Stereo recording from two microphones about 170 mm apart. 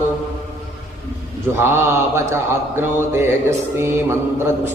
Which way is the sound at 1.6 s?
15° right (ahead or behind).